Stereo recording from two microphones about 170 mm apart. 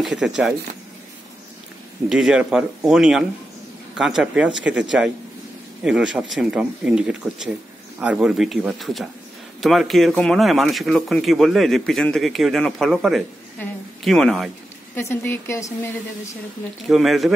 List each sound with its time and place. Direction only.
0.0 s speech: 5° right (ahead or behind)
2.0 s speech: 5° right (ahead or behind)
13.6 s speech: 10° left (ahead or behind)
15.0 s speech: 15° left (ahead or behind)
16.9 s speech: centre (ahead or behind)